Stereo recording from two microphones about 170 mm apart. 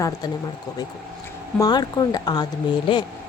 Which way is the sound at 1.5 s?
20° left (ahead or behind).